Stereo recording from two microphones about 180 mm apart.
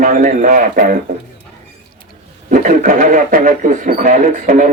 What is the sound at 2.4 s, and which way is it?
Speech, 50° right (ahead or behind).